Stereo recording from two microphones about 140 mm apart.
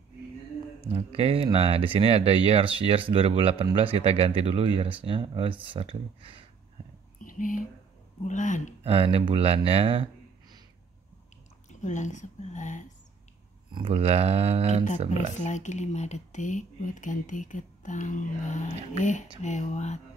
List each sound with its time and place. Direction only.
0.7 s speech: 45° right (ahead or behind)
7.2 s a sound: 70° left (ahead or behind)
8.3 s speech: 65° left (ahead or behind)
8.8 s speech: 45° right (ahead or behind)
11.8 s speech: 60° left (ahead or behind)
13.7 s speech: 35° right (ahead or behind)
15.3 s speech: 60° left (ahead or behind)